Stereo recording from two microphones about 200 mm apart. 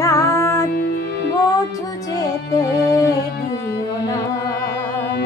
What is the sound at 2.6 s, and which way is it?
Music, 15° left (ahead or behind).